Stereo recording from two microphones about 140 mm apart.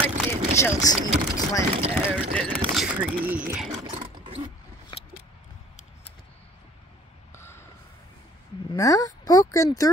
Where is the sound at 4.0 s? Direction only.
45° right (ahead or behind).